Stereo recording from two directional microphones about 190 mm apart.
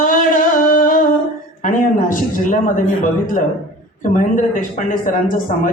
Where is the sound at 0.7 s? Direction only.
45° left (ahead or behind).